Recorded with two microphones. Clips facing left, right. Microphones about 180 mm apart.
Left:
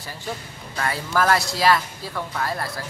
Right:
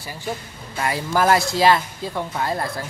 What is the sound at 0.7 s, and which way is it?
Speech, 20° right (ahead or behind).